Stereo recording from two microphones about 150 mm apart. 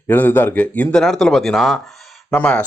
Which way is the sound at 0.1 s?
15° left (ahead or behind).